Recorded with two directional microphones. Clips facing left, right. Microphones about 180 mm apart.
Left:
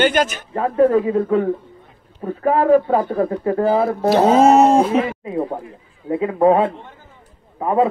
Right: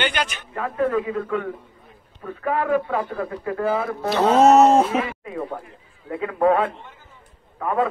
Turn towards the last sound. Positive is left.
turn(degrees=25)  # may be behind; listen again after turning